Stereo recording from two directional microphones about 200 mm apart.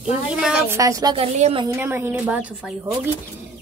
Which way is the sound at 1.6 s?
10° right (ahead or behind).